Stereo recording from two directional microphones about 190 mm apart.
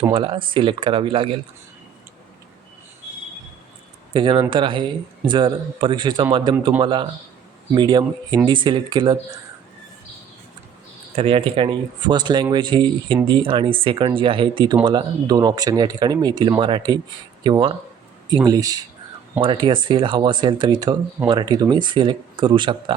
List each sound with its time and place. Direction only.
0.1 s speech: 25° right (ahead or behind)
4.1 s speech: 25° right (ahead or behind)
11.2 s speech: 30° right (ahead or behind)